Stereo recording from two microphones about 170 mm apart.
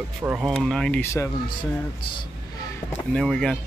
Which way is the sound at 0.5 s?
5° left (ahead or behind).